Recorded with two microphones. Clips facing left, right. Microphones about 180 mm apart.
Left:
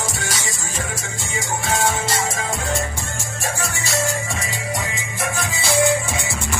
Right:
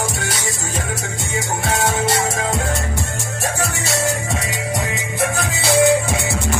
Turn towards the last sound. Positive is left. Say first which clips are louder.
# right 4 dB
turn(degrees=-65)  # may be behind; listen again after turning